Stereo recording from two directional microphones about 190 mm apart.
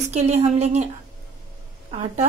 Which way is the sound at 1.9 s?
35° right (ahead or behind).